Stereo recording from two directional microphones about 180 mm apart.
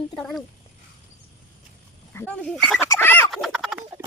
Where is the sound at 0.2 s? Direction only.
Centre (ahead or behind).